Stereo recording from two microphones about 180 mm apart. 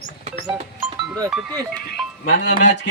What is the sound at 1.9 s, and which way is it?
Speech, 45° left (ahead or behind).